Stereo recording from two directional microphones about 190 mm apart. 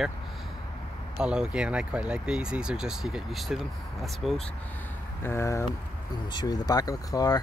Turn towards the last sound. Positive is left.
turn(degrees=20)  # may be behind; listen again after turning